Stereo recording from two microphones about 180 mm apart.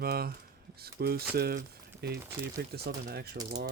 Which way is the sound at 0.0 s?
60° right (ahead or behind).